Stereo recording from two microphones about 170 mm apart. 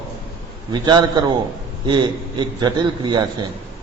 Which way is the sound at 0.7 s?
25° right (ahead or behind).